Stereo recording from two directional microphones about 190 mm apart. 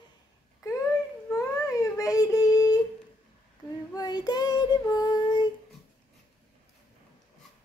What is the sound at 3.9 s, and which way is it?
Child singing, 20° left (ahead or behind).